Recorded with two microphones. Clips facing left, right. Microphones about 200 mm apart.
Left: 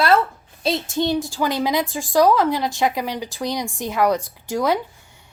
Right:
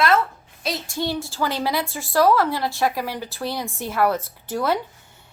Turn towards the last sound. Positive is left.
turn(degrees=15)  # may be behind; listen again after turning